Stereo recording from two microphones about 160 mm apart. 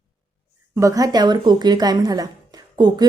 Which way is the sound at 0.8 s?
20° right (ahead or behind).